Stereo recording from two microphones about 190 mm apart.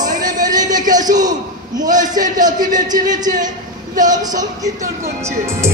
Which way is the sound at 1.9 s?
45° right (ahead or behind).